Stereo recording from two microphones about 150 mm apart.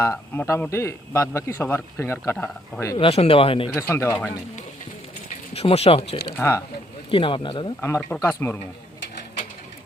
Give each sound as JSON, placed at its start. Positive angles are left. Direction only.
{"t": 0.0, "sound": "a man's voice", "side_deg": 20}
{"t": 3.0, "sound": "speech", "side_deg": 40}
{"t": 3.8, "sound": "speech", "side_deg": 15}
{"t": 5.5, "sound": "speech", "side_deg": 40}
{"t": 6.3, "sound": "speech", "side_deg": 15}
{"t": 7.1, "sound": "speech", "side_deg": 35}
{"t": 7.8, "sound": "speech", "side_deg": 15}